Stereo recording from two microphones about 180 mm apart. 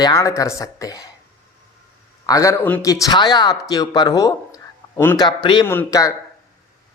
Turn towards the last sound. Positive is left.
turn(degrees=20)  # may be behind; listen again after turning